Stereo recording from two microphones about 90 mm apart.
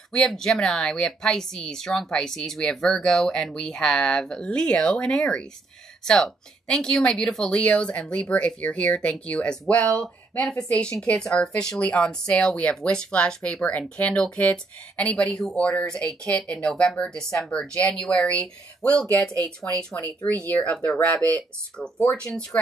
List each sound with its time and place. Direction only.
0.1 s speech: 5° left (ahead or behind)